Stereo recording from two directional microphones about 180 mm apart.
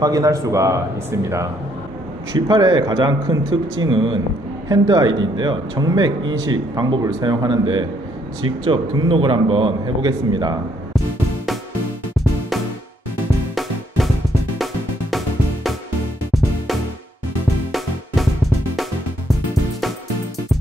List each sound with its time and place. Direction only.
0.0 s speech: 20° right (ahead or behind)
2.3 s a man's voice: 25° right (ahead or behind)
13.6 s music: centre (ahead or behind)